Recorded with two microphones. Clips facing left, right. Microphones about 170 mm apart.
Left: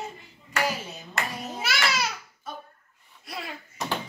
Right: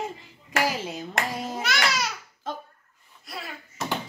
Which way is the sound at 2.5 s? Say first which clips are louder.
Right 5 dB; 90° right.